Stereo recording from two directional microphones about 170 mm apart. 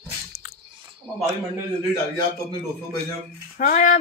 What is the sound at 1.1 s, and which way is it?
Speech, 10° left (ahead or behind).